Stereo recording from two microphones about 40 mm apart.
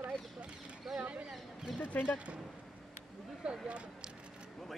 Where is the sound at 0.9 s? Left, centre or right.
Centre.